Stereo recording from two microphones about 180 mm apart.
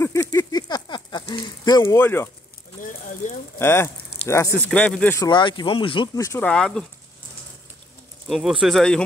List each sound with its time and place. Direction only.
0.0 s a sound: 15° left (ahead or behind)
3.2 s speech: 45° left (ahead or behind)
3.5 s speech: 15° left (ahead or behind)
5.3 s speech: 25° left (ahead or behind); by 6.9 s 5° left (ahead or behind)
8.3 s speech: centre (ahead or behind)